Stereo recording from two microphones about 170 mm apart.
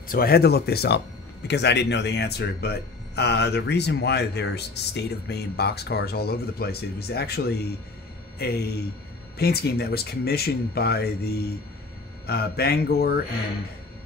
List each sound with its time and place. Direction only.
0.1 s speech: 65° left (ahead or behind)